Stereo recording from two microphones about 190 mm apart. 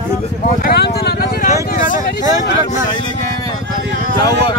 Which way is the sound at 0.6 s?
55° left (ahead or behind).